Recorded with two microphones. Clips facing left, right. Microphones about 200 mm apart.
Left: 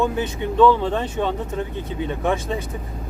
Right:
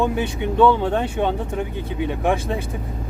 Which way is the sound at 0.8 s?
10° right (ahead or behind).